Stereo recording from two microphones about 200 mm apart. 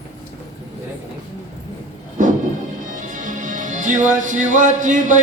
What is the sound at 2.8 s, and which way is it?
Music, 40° right (ahead or behind).